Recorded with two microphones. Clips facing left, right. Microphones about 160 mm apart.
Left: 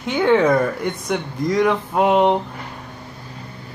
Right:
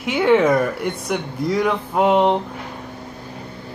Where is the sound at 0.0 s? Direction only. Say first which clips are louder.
Even; 5° right (ahead or behind).